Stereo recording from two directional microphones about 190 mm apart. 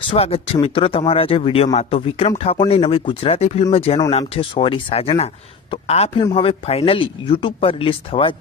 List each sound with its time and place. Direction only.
0.2 s speech: 30° left (ahead or behind)